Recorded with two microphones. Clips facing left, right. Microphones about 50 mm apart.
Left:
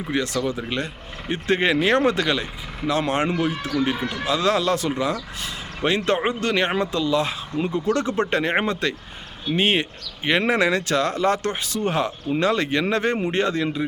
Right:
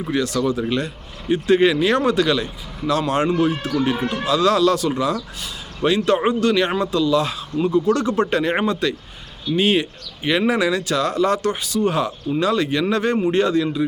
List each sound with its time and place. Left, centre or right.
0.1 s speech: left
4.0 s speech: right
4.3 s speech: left